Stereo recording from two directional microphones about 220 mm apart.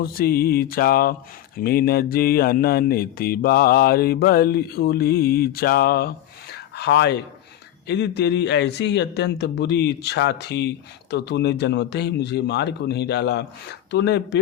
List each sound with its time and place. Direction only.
0.0 s speech: 40° left (ahead or behind)